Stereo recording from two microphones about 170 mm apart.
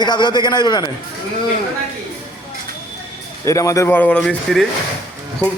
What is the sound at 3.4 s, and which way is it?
A man's voice, 20° left (ahead or behind).